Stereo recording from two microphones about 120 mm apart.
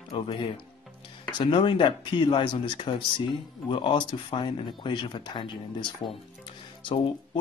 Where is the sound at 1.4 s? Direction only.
45° left (ahead or behind).